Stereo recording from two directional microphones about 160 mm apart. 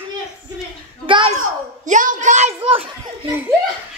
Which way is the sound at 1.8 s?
50° right (ahead or behind).